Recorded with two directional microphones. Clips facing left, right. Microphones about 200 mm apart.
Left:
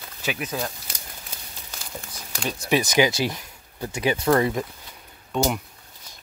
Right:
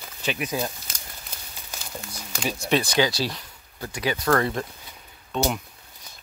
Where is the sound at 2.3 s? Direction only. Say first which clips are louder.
Right 1 dB; 5° right (ahead or behind).